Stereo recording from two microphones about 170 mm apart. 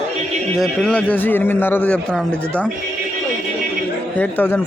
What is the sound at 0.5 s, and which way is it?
A man's voice, centre (ahead or behind).